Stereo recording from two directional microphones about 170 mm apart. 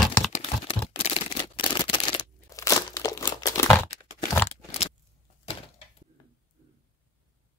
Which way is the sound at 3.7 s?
15° left (ahead or behind).